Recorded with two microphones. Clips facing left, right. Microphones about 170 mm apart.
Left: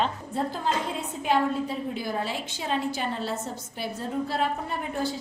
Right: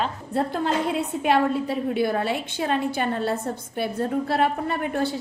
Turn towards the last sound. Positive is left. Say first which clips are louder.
# right 5 dB
turn(degrees=-65)  # may be behind; listen again after turning